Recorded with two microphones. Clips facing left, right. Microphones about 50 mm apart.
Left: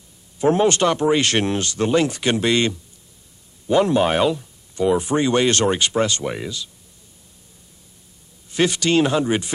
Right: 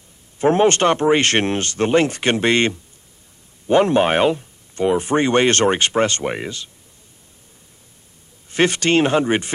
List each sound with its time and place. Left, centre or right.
0.4 s speech: right
8.5 s speech: right